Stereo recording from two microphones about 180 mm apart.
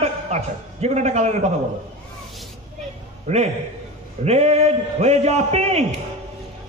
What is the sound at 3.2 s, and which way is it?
A man's voice, 40° right (ahead or behind).